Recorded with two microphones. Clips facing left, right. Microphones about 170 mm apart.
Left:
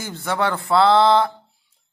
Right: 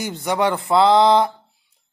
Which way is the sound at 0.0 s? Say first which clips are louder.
Right 3 dB; 15° right (ahead or behind).